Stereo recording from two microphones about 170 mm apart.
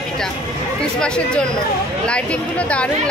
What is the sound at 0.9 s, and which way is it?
Speech, 5° left (ahead or behind).